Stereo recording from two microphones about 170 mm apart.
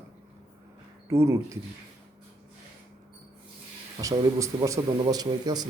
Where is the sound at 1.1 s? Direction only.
15° right (ahead or behind).